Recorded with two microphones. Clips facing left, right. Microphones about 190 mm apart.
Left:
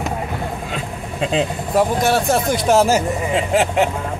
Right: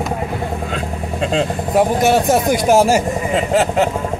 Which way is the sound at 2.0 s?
15° right (ahead or behind).